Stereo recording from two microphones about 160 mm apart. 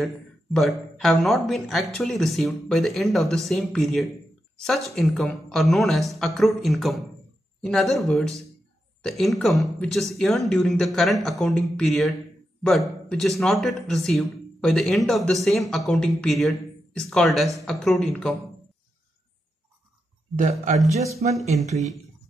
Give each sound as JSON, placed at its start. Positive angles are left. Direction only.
{"t": 0.0, "sound": "a man's voice", "side_deg": 0}
{"t": 20.3, "sound": "a man's voice", "side_deg": -50}